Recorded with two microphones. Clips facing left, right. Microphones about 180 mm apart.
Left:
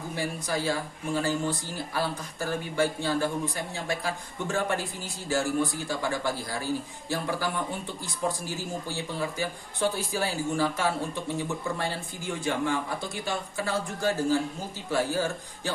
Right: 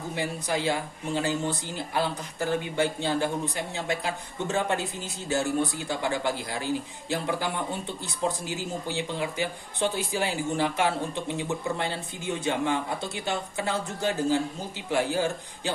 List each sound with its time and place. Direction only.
0.2 s a woman's voice: 20° right (ahead or behind)